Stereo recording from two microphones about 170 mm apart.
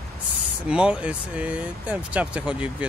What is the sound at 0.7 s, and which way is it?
Speech, 5° right (ahead or behind).